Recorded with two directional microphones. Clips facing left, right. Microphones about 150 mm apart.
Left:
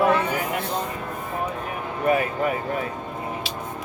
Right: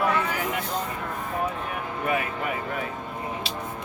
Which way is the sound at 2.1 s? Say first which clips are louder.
Left 6 dB; 35° left (ahead or behind).